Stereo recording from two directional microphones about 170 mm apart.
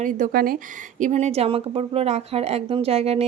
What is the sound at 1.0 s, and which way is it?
A woman's voice, 45° right (ahead or behind).